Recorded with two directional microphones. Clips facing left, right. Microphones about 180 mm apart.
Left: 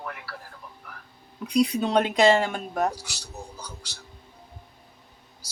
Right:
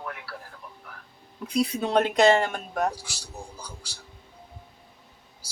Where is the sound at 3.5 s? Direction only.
30° right (ahead or behind).